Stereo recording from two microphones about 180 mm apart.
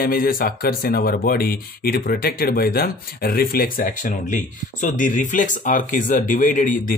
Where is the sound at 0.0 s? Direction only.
55° left (ahead or behind).